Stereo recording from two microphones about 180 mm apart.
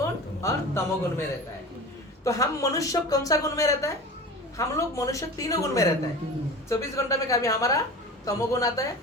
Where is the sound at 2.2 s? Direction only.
20° left (ahead or behind).